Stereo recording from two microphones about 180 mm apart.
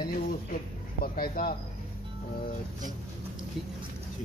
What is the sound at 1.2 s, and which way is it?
Speech, 55° left (ahead or behind).